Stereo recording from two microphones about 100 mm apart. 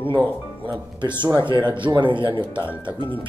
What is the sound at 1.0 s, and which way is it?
Speech, 50° right (ahead or behind).